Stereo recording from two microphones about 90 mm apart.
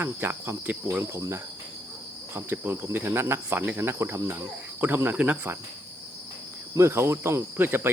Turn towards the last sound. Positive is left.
turn(degrees=-25)  # may be behind; listen again after turning